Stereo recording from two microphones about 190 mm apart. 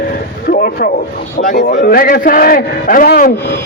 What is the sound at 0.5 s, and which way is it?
A man's voice, 50° left (ahead or behind).